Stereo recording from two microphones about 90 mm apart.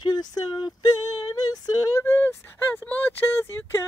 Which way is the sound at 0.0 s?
50° left (ahead or behind).